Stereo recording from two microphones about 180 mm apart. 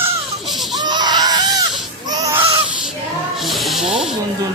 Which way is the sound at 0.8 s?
25° right (ahead or behind).